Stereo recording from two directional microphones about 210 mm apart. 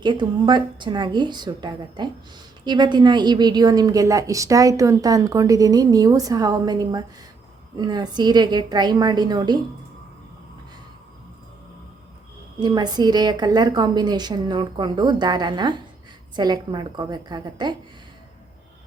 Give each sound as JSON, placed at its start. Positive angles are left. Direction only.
{"t": 0.0, "sound": "a woman's voice", "side_deg": -20}
{"t": 12.5, "sound": "a woman's voice", "side_deg": -20}